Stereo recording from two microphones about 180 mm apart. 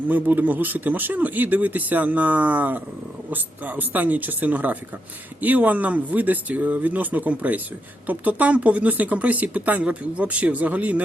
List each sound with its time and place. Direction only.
0.1 s speech: 10° right (ahead or behind)